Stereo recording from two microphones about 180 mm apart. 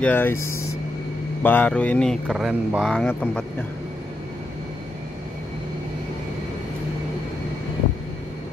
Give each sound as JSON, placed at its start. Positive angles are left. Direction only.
{"t": 0.0, "sound": "speech", "side_deg": 10}
{"t": 2.2, "sound": "speech", "side_deg": -5}